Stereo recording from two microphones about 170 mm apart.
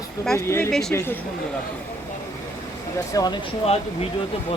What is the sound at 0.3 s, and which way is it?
Speech, 15° left (ahead or behind).